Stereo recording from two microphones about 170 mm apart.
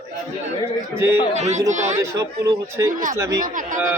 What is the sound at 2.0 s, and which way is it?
Speech, 20° right (ahead or behind).